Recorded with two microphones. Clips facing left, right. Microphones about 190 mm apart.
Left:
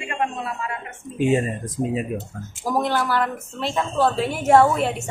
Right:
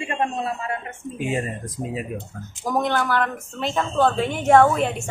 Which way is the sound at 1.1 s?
25° left (ahead or behind).